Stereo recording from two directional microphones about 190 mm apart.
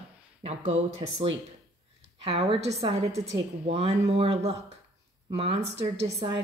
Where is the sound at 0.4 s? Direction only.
35° right (ahead or behind).